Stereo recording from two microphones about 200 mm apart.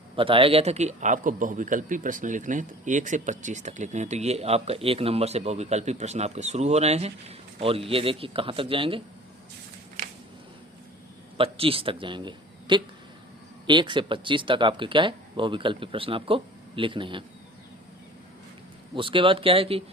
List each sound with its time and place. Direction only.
0.2 s a man's voice: 25° right (ahead or behind)
11.3 s a man's voice: 30° right (ahead or behind)
18.9 s speech: 25° right (ahead or behind)